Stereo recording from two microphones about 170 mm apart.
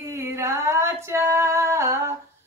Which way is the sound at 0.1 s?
15° right (ahead or behind).